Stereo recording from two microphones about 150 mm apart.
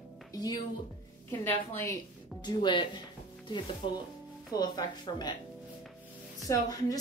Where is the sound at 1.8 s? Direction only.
25° left (ahead or behind).